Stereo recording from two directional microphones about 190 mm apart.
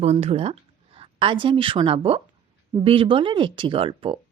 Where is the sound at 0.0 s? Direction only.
35° right (ahead or behind).